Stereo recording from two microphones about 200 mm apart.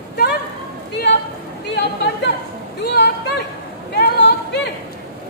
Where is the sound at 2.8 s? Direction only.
55° left (ahead or behind).